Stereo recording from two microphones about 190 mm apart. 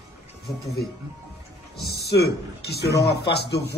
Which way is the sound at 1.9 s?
60° left (ahead or behind).